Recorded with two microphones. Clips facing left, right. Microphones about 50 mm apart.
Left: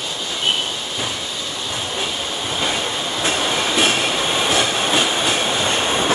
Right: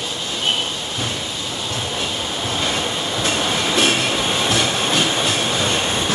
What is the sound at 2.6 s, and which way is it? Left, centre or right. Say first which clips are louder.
Train: left 2 dB; centre.